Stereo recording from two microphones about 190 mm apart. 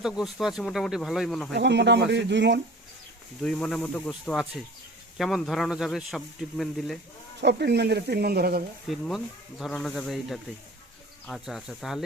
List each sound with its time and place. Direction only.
0.0 s speech: centre (ahead or behind)
1.5 s speech: 65° right (ahead or behind)
3.4 s speech: 5° left (ahead or behind)
7.4 s speech: 60° right (ahead or behind)
8.9 s speech: centre (ahead or behind)